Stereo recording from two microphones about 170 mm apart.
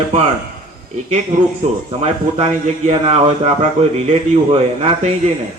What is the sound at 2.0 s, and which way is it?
A man's voice, 40° right (ahead or behind).